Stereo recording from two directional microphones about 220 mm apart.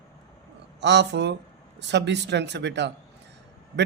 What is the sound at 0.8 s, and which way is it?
Speech, 50° right (ahead or behind).